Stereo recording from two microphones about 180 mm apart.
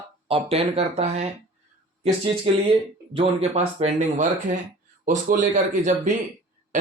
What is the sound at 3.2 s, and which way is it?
Speech, 35° right (ahead or behind).